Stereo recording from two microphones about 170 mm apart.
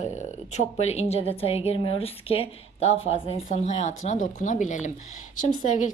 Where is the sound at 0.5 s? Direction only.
40° left (ahead or behind).